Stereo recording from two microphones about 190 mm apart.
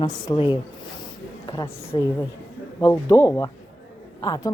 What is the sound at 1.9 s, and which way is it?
A woman's voice, 20° left (ahead or behind).